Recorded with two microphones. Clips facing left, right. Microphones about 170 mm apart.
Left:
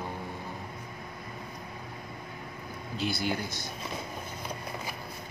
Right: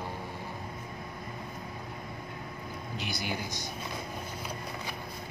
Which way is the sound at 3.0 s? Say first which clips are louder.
Left 6 dB; 15° right (ahead or behind).